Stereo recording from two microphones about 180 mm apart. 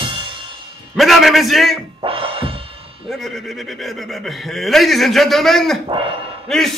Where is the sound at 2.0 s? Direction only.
30° right (ahead or behind).